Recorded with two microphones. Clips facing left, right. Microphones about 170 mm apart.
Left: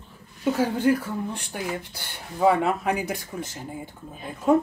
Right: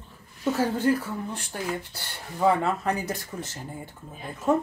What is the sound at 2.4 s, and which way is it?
Speech, 10° left (ahead or behind).